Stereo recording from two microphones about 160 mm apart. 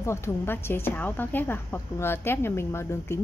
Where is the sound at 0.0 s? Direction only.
15° left (ahead or behind).